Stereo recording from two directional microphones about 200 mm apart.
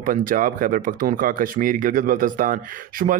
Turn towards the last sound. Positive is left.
turn(degrees=-45)  # may be behind; listen again after turning